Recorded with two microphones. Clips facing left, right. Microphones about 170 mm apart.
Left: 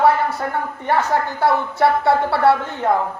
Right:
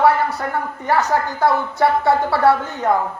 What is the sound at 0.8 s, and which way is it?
Speech, 30° left (ahead or behind).